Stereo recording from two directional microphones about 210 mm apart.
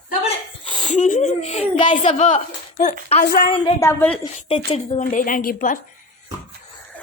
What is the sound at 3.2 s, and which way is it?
Speech, 45° left (ahead or behind).